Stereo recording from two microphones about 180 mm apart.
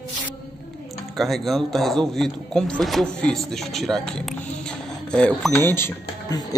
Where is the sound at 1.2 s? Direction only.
Centre (ahead or behind).